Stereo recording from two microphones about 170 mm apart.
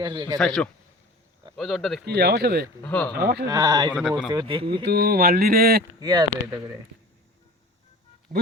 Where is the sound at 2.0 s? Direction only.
70° right (ahead or behind).